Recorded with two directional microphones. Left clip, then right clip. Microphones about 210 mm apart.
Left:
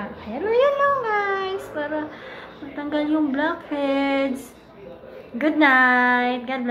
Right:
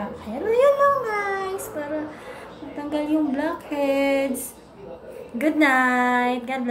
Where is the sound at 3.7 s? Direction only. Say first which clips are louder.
Right 1 dB; 40° left (ahead or behind).